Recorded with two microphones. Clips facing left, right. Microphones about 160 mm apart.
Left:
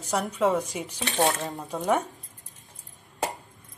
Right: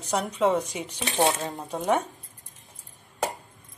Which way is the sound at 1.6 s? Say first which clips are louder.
Even; 20° right (ahead or behind).